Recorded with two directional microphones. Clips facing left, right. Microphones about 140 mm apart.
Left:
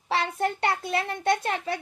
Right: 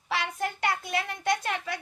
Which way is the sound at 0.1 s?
30° left (ahead or behind).